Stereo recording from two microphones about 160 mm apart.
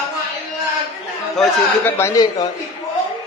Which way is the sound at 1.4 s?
15° left (ahead or behind).